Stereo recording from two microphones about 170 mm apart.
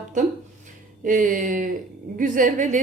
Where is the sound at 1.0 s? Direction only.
50° right (ahead or behind).